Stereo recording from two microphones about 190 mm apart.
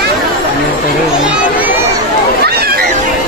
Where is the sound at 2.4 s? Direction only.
55° right (ahead or behind).